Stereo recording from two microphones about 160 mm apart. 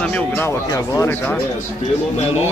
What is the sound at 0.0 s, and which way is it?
Speech, 10° left (ahead or behind).